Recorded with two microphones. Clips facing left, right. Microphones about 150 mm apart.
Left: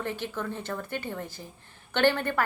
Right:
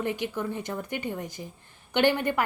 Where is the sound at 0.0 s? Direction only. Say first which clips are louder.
Right 3 dB; 15° right (ahead or behind).